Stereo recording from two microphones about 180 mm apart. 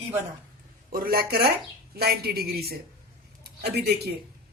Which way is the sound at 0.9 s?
55° right (ahead or behind).